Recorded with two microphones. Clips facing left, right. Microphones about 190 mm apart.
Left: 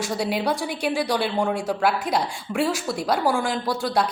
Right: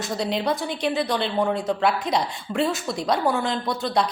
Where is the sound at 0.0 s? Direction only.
10° left (ahead or behind).